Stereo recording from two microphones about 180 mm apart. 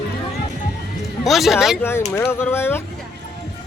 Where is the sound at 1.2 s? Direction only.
Centre (ahead or behind).